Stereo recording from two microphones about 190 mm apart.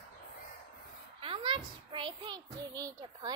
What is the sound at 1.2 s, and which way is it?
A child's voice, 25° right (ahead or behind).